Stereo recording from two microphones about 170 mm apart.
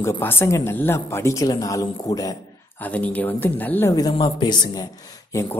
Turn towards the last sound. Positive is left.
turn(degrees=20)  # may be behind; listen again after turning